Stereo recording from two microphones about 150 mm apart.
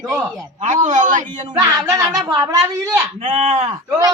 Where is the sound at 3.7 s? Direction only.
20° right (ahead or behind).